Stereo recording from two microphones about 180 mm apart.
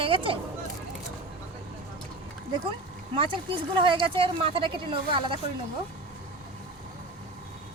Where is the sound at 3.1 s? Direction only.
30° right (ahead or behind).